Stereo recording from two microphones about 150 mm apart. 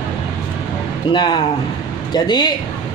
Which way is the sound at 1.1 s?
30° left (ahead or behind).